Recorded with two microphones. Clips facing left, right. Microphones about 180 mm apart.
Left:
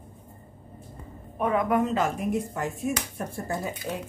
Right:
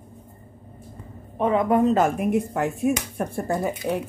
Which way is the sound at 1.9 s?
55° right (ahead or behind).